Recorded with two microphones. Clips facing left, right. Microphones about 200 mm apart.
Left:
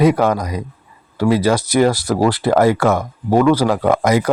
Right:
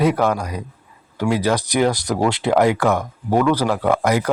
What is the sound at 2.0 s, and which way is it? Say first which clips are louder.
Speech: left 3 dB; 5° left (ahead or behind).